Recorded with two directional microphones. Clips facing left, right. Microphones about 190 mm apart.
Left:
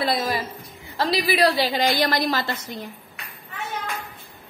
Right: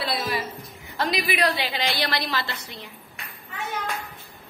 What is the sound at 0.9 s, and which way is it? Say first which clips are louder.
A woman's voice: left 4 dB; 35° left (ahead or behind).